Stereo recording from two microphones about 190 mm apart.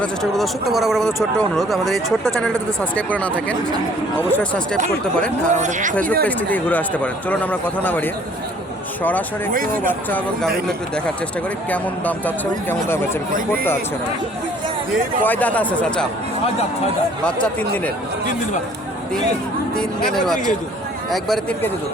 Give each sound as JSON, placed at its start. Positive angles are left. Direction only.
{"t": 0.0, "sound": "speech", "side_deg": 0}
{"t": 5.5, "sound": "speech", "side_deg": -40}
{"t": 5.9, "sound": "speech", "side_deg": 5}
{"t": 10.1, "sound": "speech", "side_deg": 10}
{"t": 11.7, "sound": "speech", "side_deg": 10}
{"t": 15.2, "sound": "speech", "side_deg": 10}
{"t": 17.2, "sound": "speech", "side_deg": 5}
{"t": 20.1, "sound": "speech", "side_deg": 0}